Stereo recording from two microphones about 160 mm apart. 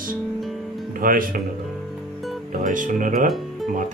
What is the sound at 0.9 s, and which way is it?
Speech, 60° right (ahead or behind).